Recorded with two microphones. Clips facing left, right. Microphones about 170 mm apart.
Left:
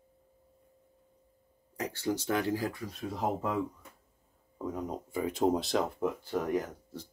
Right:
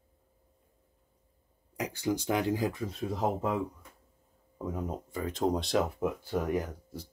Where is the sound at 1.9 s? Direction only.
15° right (ahead or behind).